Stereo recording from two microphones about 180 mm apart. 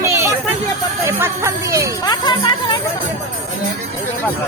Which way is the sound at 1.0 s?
15° right (ahead or behind).